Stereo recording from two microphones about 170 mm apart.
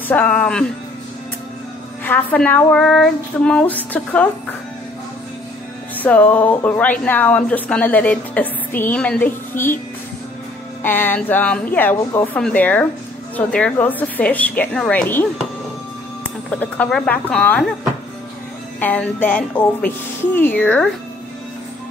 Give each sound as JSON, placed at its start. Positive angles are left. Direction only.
{"t": 0.1, "sound": "speech", "side_deg": 10}
{"t": 2.0, "sound": "speech", "side_deg": 10}
{"t": 5.9, "sound": "speech", "side_deg": 10}
{"t": 10.8, "sound": "speech", "side_deg": 10}
{"t": 16.4, "sound": "speech", "side_deg": 10}
{"t": 18.8, "sound": "speech", "side_deg": 10}